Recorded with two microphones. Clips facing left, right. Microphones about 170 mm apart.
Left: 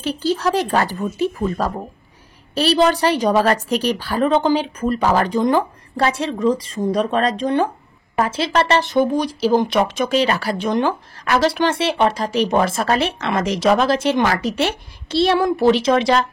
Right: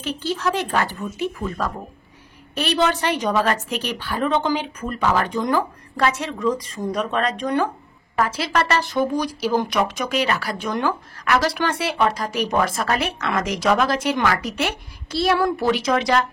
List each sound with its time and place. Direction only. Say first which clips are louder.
0.0 s a woman's voice: left 4 dB; 35° left (ahead or behind)